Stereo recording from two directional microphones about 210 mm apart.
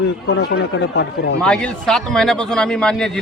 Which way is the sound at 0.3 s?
55° left (ahead or behind).